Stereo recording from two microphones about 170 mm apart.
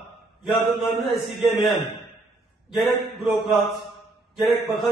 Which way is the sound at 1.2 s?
Centre (ahead or behind).